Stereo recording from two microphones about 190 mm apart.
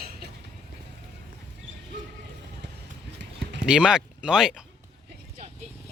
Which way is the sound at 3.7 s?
5° right (ahead or behind).